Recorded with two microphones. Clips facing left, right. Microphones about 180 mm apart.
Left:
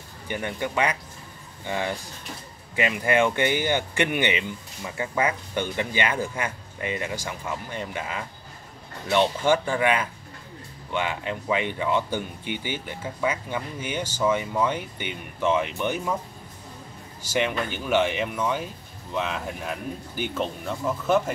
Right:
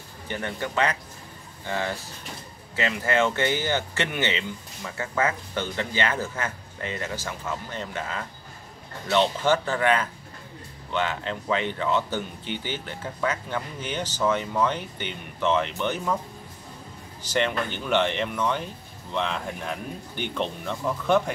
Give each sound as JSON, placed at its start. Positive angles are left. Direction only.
{"t": 0.3, "sound": "speech", "side_deg": 15}
{"t": 17.2, "sound": "speech", "side_deg": 10}